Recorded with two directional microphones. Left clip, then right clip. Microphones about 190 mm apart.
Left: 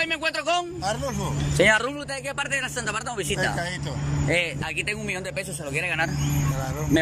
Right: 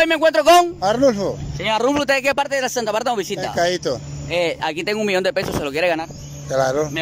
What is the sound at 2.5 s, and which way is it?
Speech, 40° right (ahead or behind).